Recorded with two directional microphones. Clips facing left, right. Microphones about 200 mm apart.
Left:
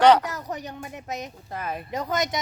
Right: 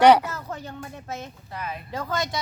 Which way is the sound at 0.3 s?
15° left (ahead or behind).